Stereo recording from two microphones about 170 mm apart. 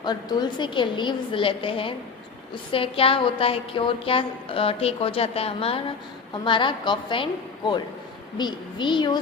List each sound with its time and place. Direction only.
0.0 s a woman's voice: 25° left (ahead or behind)